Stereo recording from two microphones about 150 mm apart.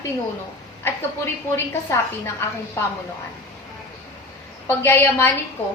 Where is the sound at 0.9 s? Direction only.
15° left (ahead or behind).